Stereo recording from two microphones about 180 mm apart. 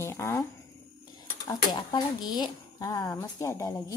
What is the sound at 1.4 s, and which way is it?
Speech, 25° left (ahead or behind).